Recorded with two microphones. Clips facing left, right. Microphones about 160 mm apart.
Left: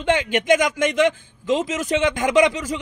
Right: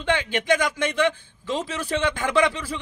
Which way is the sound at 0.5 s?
20° left (ahead or behind).